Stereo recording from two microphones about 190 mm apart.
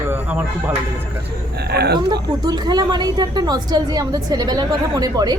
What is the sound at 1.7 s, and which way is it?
Speech, 60° right (ahead or behind).